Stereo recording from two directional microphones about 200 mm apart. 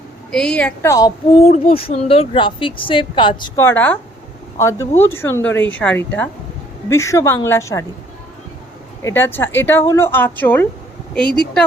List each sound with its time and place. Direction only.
0.3 s a woman's voice: 5° left (ahead or behind)
1.4 s a woman's voice: 30° left (ahead or behind); by 7.9 s 15° left (ahead or behind)
9.0 s speech: 15° left (ahead or behind)